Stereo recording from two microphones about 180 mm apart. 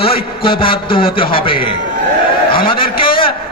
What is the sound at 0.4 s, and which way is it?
A man's voice, 30° left (ahead or behind).